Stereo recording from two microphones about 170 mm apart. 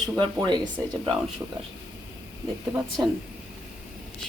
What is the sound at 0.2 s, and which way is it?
Speech, 25° right (ahead or behind).